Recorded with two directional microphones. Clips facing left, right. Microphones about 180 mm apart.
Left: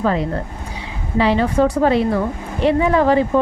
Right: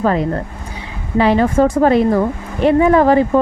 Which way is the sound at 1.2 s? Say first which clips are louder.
Right 3 dB; 50° right (ahead or behind).